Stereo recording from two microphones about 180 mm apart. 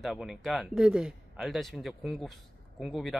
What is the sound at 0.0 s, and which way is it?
Speech, centre (ahead or behind).